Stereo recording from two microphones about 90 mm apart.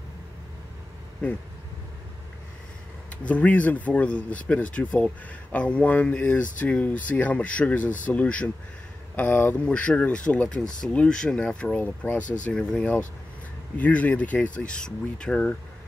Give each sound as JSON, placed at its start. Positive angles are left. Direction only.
{"t": 3.3, "sound": "speech", "side_deg": 15}